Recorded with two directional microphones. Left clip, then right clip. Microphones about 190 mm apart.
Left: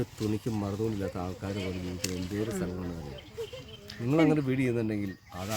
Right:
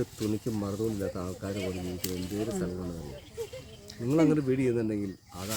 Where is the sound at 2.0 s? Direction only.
20° right (ahead or behind).